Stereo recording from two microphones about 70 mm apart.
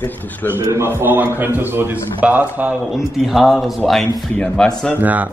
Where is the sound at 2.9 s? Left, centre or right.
Centre.